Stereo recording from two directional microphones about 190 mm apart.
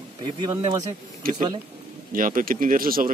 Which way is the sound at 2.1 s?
45° right (ahead or behind).